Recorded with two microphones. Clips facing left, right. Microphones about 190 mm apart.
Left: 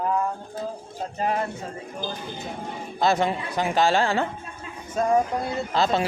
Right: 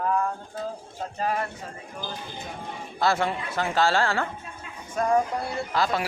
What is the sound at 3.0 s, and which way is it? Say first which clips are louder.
Speech: left 2 dB; 20° left (ahead or behind).